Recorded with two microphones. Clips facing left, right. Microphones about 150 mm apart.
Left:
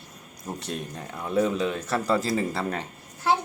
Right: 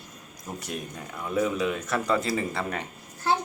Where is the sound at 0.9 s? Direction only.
30° left (ahead or behind).